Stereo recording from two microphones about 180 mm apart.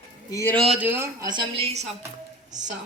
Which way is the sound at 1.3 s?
30° right (ahead or behind).